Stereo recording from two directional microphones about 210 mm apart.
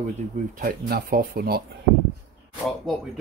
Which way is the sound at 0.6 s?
45° right (ahead or behind).